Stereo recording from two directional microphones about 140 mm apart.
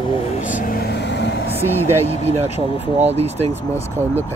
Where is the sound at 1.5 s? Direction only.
15° right (ahead or behind).